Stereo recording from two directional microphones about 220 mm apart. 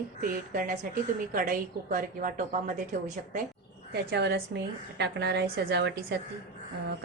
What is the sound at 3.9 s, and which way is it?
A woman's voice, 50° right (ahead or behind).